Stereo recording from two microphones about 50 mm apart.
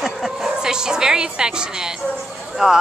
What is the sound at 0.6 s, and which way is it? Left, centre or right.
A woman's voice, centre.